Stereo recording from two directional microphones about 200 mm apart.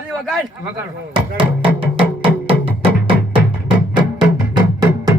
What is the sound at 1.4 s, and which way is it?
Music, 25° right (ahead or behind).